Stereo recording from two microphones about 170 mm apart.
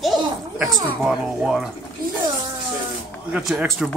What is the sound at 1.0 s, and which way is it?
Speech, 5° right (ahead or behind).